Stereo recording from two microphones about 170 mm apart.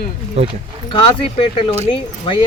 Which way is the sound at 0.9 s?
30° left (ahead or behind).